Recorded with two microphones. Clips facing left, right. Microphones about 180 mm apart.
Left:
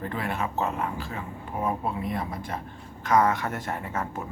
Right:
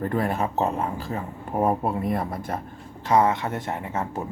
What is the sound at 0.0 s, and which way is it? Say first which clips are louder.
Speech: right 6 dB; 40° right (ahead or behind).